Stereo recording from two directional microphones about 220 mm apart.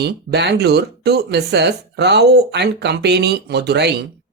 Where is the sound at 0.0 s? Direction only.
50° right (ahead or behind).